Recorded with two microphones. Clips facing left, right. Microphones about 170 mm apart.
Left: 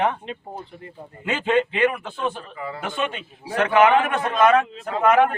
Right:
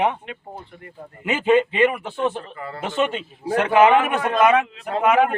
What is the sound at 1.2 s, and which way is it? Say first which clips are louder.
A man's voice: right 3 dB; 15° right (ahead or behind).